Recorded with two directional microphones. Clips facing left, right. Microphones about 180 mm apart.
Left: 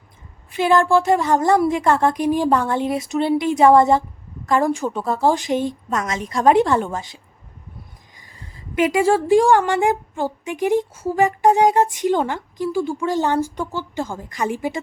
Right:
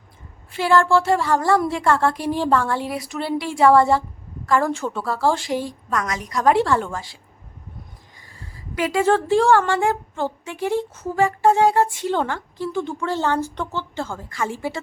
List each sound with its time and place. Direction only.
0.5 s a woman's voice: 20° left (ahead or behind)
8.5 s a woman's voice: 20° left (ahead or behind)